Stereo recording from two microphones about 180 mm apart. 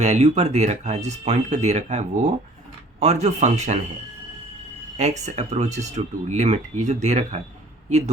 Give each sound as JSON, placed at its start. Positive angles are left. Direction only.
{"t": 0.0, "sound": "speech", "side_deg": -40}
{"t": 4.9, "sound": "speech", "side_deg": -40}